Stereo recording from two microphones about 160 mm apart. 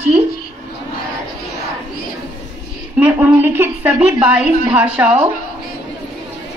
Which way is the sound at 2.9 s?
10° right (ahead or behind).